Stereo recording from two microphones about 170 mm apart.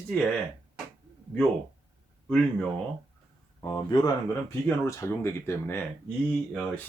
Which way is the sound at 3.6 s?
25° left (ahead or behind).